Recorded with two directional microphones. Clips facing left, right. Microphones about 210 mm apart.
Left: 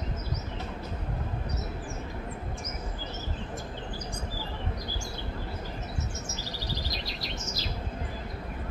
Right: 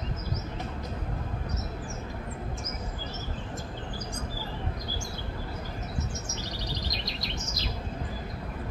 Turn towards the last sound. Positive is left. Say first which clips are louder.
# even
turn(degrees=5)  # may be behind; listen again after turning